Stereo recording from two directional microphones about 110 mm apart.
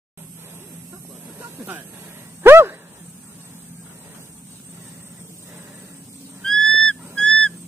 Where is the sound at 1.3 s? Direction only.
20° right (ahead or behind).